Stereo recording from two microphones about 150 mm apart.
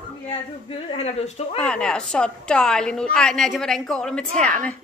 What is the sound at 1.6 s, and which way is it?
A woman's voice, 5° left (ahead or behind).